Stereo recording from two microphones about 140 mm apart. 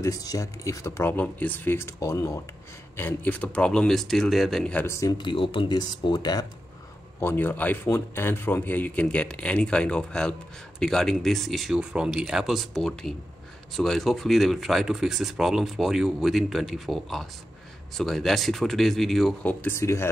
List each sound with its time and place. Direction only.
0.0 s speech: 25° left (ahead or behind)
1.1 s speech: 10° left (ahead or behind)
4.8 s speech: 20° left (ahead or behind)
5.1 s speech: 35° left (ahead or behind)
7.2 s speech: 15° left (ahead or behind)
19.4 s speech: 15° left (ahead or behind)